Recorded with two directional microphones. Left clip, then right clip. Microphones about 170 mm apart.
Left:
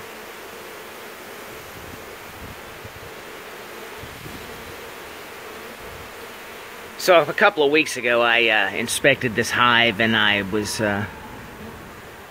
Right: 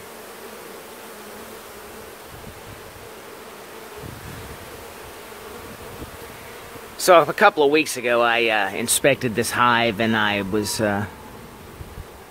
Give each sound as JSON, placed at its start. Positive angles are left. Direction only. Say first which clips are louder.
{"t": 7.0, "sound": "speech", "louder": "right 1 dB", "side_deg": -25}